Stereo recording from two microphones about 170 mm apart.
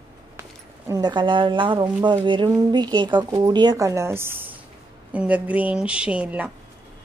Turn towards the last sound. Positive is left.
turn(degrees=-10)  # may be behind; listen again after turning